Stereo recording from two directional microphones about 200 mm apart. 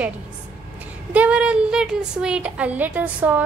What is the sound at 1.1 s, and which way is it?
A woman's voice, 5° right (ahead or behind).